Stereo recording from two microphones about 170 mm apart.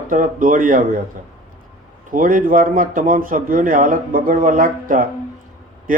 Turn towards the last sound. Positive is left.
turn(degrees=-55)  # may be behind; listen again after turning